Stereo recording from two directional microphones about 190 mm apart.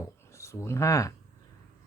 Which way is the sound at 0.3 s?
15° left (ahead or behind).